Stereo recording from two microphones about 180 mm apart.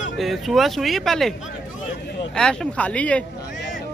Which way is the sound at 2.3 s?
5° left (ahead or behind).